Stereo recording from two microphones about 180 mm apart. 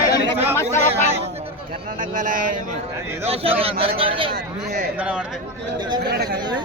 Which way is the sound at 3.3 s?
30° right (ahead or behind).